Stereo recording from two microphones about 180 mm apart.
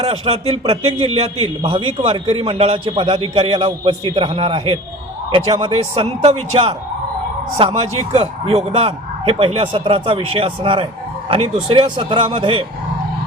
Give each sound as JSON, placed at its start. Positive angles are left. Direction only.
{"t": 0.0, "sound": "a man's voice", "side_deg": -35}